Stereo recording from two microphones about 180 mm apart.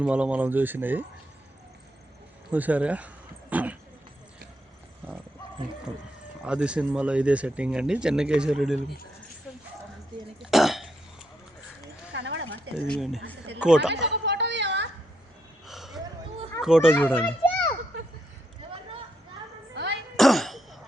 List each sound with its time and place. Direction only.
0.0 s speech: 5° right (ahead or behind)
2.5 s speech: 10° right (ahead or behind)
6.4 s speech: 5° right (ahead or behind)
10.4 s cough: centre (ahead or behind)
12.1 s horse: 80° right
12.7 s speech: centre (ahead or behind)
13.9 s a sound: 75° right (ahead or behind)
15.6 s a sound: centre (ahead or behind)
16.6 s speech: 5° right (ahead or behind)
17.2 s a child's voice: 10° left (ahead or behind)
19.7 s throat clearing: 75° right (ahead or behind)
20.1 s throat clearing: centre (ahead or behind)